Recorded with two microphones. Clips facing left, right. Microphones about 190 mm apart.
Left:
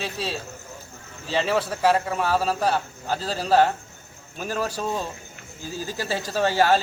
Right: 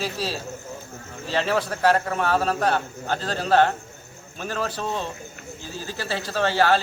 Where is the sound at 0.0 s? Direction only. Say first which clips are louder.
Right 2 dB; centre (ahead or behind).